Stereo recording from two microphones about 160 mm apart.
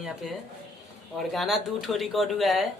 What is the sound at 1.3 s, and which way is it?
Speech, centre (ahead or behind).